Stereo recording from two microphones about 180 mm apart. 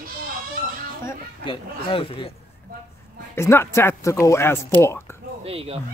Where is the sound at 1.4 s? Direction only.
30° left (ahead or behind).